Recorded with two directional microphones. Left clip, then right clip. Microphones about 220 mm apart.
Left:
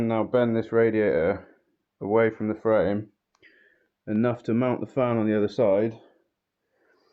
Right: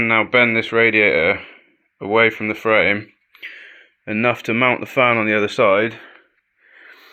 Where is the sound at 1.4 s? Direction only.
15° right (ahead or behind).